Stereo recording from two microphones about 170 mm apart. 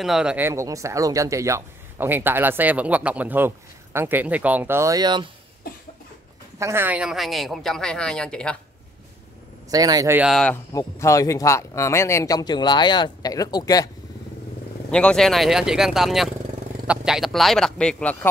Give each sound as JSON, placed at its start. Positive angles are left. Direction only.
{"t": 0.0, "sound": "speech", "side_deg": -5}
{"t": 6.6, "sound": "speech", "side_deg": -15}
{"t": 9.7, "sound": "speech", "side_deg": -20}
{"t": 10.1, "sound": "speech", "side_deg": 0}
{"t": 10.5, "sound": "speech", "side_deg": 15}
{"t": 14.9, "sound": "speech", "side_deg": 5}